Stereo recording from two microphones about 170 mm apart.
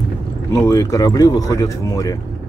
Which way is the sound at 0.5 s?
20° left (ahead or behind).